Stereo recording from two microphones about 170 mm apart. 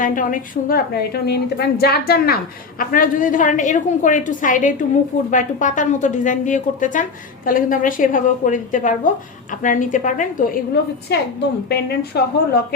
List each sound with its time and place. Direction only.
0.0 s a woman's voice: 50° left (ahead or behind)
11.1 s a woman's voice: 75° left (ahead or behind)